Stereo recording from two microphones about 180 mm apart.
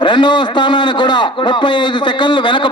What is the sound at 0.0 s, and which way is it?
A man's voice, 25° left (ahead or behind).